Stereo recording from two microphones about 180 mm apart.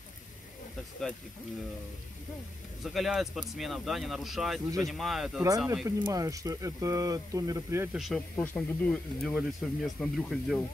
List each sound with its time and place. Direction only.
2.8 s speech: centre (ahead or behind)
5.9 s speech: 20° right (ahead or behind)
7.9 s speech: centre (ahead or behind)